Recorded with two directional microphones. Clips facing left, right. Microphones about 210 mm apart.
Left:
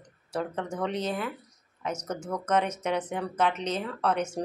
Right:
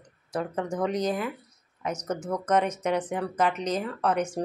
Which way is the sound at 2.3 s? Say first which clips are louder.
Right 2 dB; 10° right (ahead or behind).